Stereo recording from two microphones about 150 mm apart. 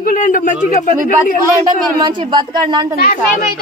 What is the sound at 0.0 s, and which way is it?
Speech, 65° left (ahead or behind).